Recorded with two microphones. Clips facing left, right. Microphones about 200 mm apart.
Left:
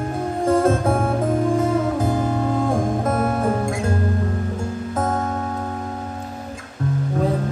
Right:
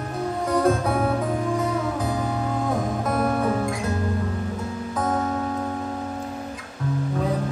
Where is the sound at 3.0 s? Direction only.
45° left (ahead or behind).